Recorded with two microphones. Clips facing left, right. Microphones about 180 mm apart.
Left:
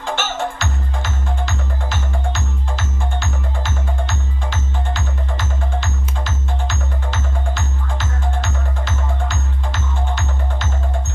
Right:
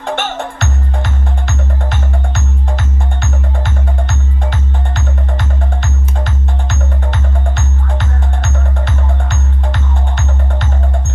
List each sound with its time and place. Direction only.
0.0 s music: 60° right (ahead or behind)